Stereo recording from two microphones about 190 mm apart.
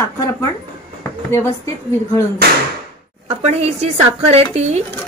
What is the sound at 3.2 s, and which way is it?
A woman's voice, 35° right (ahead or behind).